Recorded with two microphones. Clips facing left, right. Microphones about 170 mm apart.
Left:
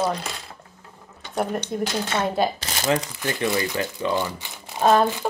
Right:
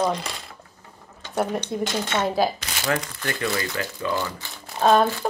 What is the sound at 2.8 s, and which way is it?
Speech, 15° left (ahead or behind).